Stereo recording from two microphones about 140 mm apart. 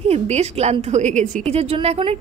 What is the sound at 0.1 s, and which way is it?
A woman's voice, 50° right (ahead or behind).